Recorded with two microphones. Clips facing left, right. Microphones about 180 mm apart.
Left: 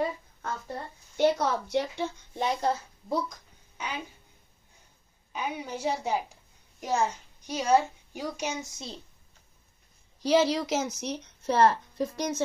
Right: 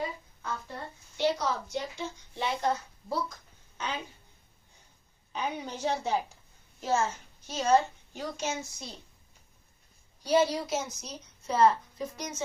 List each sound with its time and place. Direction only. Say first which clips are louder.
1.1 s a woman's voice: left 4 dB; 55° left (ahead or behind)
2.3 s speech: left 2 dB; 40° left (ahead or behind)
3.1 s a sound: left 3 dB; 15° left (ahead or behind)
5.3 s a woman's voice: left 1 dB; 10° left (ahead or behind)
10.2 s a woman's voice: left 2 dB; 90° left; by 12.4 s 70° left (ahead or behind)